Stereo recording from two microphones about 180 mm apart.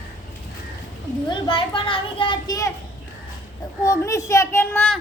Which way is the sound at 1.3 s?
30° left (ahead or behind).